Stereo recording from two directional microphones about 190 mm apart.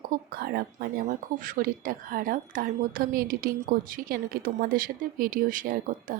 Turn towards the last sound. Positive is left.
turn(degrees=-45)  # may be behind; listen again after turning